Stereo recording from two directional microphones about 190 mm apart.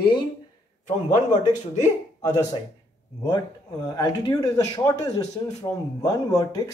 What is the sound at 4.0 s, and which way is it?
Speech, 20° left (ahead or behind).